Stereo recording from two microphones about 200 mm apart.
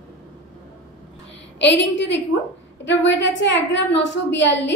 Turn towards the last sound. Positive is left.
turn(degrees=65)  # may be behind; listen again after turning